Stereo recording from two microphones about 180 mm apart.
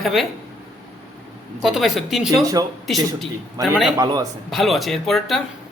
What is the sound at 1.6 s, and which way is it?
Speech, centre (ahead or behind).